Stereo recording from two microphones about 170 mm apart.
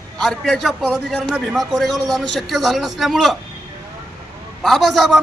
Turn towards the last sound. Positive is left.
turn(degrees=0)  # may be behind; listen again after turning